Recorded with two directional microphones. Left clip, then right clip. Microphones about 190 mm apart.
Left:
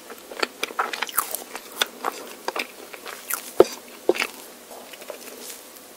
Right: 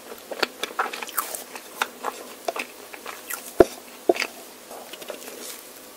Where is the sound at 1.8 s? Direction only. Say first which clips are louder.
Left 2 dB; 25° left (ahead or behind).